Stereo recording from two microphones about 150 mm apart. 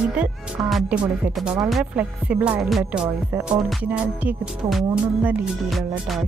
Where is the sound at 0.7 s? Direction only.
5° right (ahead or behind).